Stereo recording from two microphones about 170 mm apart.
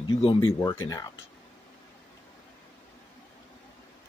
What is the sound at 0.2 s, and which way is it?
Speech, 30° left (ahead or behind).